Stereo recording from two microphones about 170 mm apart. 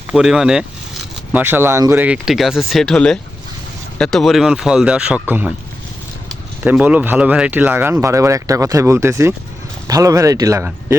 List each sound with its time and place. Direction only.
0.1 s speech: 5° right (ahead or behind)
6.7 s speech: 10° right (ahead or behind)